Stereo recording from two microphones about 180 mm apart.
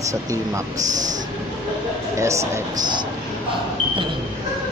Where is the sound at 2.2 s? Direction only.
15° right (ahead or behind).